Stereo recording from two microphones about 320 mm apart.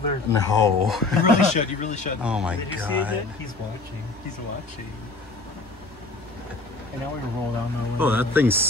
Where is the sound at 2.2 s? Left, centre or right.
Centre.